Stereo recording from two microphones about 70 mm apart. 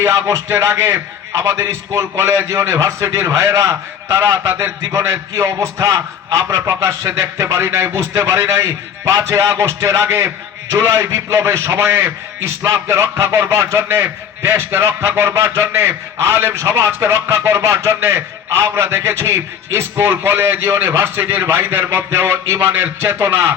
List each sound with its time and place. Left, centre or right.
0.0 s speech: right
0.4 s a man's voice: right
13.7 s a man's voice: right